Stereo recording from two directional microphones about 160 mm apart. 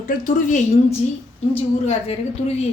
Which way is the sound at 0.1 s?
55° left (ahead or behind).